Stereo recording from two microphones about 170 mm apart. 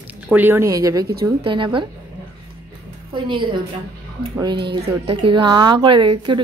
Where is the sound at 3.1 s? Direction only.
30° right (ahead or behind).